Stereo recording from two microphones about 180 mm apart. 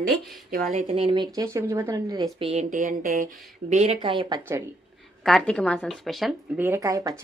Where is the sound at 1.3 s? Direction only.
15° right (ahead or behind).